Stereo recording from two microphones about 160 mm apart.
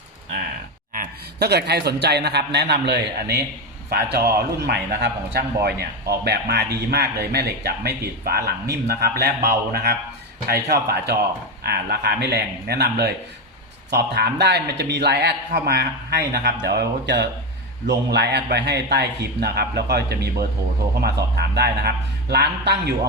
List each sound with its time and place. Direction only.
0.9 s a man's voice: 90° right
4.4 s a man's voice: 75° right (ahead or behind)
21.3 s a man's voice: 90° right